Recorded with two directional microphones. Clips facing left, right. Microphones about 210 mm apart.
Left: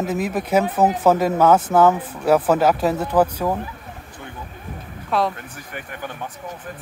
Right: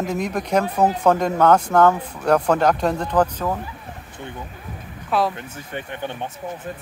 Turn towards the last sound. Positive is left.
turn(degrees=-25)  # may be behind; listen again after turning